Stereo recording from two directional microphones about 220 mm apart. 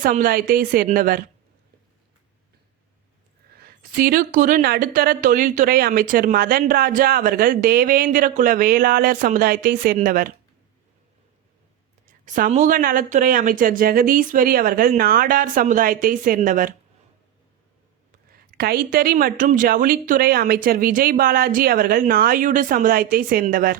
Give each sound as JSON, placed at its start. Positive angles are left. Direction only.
{"t": 0.0, "sound": "speech", "side_deg": -40}
{"t": 3.6, "sound": "a woman's voice", "side_deg": -40}
{"t": 12.2, "sound": "speech", "side_deg": -35}
{"t": 18.5, "sound": "speech", "side_deg": -40}